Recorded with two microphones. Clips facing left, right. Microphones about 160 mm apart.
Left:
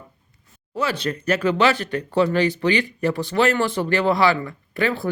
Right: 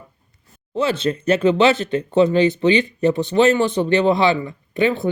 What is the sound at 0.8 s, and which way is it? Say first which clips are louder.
Speech: right 4 dB; 25° right (ahead or behind).